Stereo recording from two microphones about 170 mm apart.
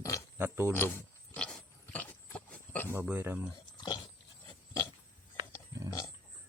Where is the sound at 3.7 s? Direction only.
25° left (ahead or behind).